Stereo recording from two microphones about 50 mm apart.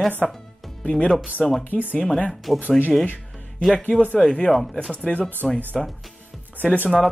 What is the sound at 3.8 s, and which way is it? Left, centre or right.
Speech, centre.